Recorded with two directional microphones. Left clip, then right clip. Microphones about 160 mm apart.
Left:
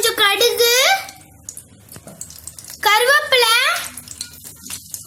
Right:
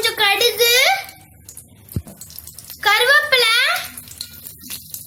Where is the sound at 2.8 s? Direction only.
45° left (ahead or behind).